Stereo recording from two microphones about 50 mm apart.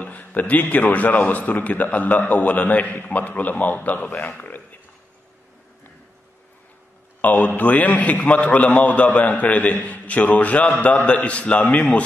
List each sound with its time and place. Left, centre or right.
0.0 s a man's voice: left
4.4 s a sound: left
7.2 s a man's voice: left